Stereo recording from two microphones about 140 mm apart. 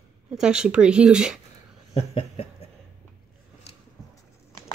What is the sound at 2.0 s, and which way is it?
Speech, 50° left (ahead or behind).